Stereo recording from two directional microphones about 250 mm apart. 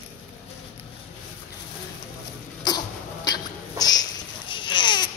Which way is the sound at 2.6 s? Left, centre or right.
Centre.